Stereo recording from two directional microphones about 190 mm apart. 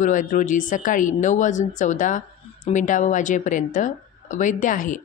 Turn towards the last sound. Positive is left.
turn(degrees=45)  # may be behind; listen again after turning